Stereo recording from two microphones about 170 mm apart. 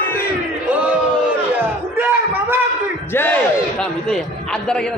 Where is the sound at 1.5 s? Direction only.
10° right (ahead or behind).